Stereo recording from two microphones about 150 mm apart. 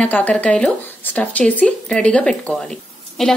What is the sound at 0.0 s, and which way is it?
Speech, 10° left (ahead or behind).